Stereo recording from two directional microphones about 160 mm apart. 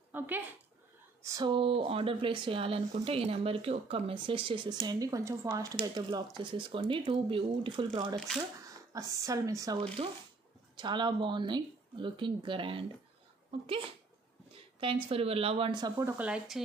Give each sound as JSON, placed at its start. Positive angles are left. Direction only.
{"t": 0.1, "sound": "a sound", "side_deg": -15}
{"t": 1.2, "sound": "speech", "side_deg": -25}
{"t": 14.5, "sound": "a woman's voice", "side_deg": -35}
{"t": 16.1, "sound": "speech", "side_deg": -10}